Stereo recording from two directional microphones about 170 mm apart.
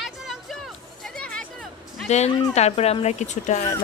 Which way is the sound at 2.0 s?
40° left (ahead or behind).